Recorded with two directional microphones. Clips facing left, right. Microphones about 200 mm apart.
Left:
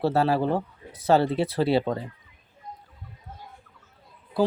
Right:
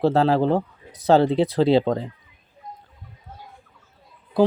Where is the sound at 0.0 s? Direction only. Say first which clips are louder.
Right 4 dB; 15° right (ahead or behind).